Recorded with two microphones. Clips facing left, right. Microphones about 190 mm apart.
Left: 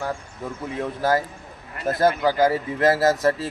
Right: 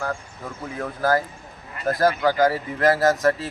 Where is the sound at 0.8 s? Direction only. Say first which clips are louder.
Even; 25° left (ahead or behind).